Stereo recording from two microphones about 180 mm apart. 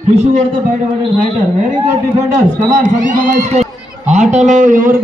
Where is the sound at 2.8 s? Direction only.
45° right (ahead or behind).